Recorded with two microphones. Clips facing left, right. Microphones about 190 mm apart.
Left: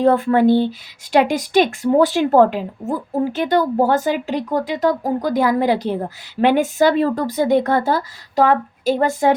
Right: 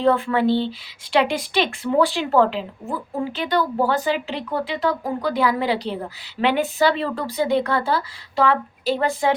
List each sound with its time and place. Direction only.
0.0 s speech: 45° left (ahead or behind)